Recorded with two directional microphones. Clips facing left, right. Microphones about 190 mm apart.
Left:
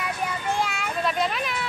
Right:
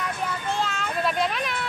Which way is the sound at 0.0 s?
10° left (ahead or behind).